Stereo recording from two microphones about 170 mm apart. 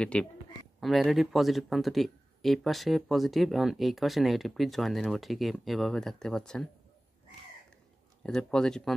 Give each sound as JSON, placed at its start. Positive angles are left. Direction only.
{"t": 0.0, "sound": "speech", "side_deg": 5}
{"t": 8.2, "sound": "speech", "side_deg": 5}